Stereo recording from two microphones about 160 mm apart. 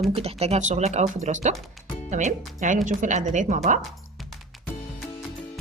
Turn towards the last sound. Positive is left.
turn(degrees=-50)  # may be behind; listen again after turning